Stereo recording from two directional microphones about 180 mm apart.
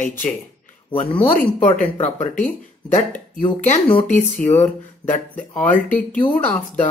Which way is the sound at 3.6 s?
35° left (ahead or behind).